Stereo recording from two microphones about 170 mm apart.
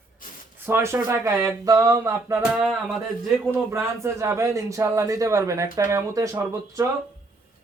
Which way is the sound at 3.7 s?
15° right (ahead or behind).